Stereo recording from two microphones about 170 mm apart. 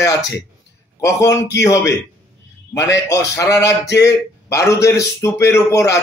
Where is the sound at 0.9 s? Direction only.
20° left (ahead or behind).